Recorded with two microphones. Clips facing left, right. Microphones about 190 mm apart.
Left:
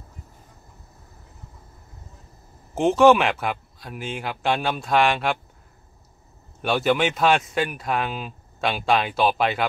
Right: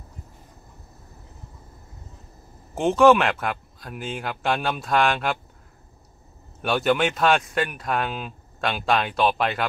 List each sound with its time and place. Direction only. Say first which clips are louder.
2.7 s speech: left 1 dB; centre (ahead or behind)
6.6 s speech: even; centre (ahead or behind)